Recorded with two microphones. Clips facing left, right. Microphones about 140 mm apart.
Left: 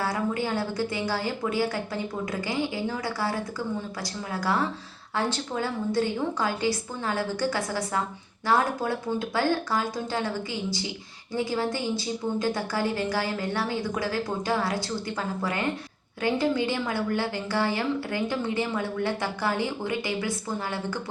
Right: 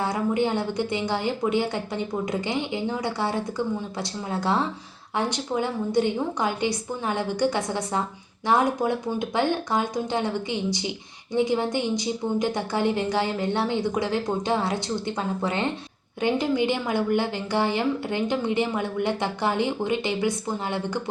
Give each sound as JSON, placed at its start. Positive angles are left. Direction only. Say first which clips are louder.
{"t": 0.0, "sound": "a woman's voice", "louder": "right 4 dB", "side_deg": -20}